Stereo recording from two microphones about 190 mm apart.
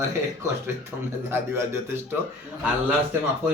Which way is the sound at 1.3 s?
15° right (ahead or behind).